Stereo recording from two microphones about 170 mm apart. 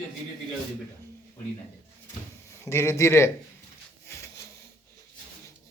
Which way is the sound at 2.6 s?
15° left (ahead or behind).